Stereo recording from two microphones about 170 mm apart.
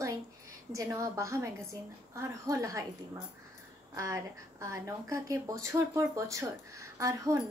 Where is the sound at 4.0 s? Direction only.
20° right (ahead or behind).